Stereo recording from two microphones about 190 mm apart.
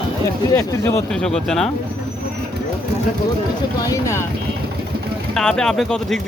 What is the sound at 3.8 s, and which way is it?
Speech, 15° left (ahead or behind).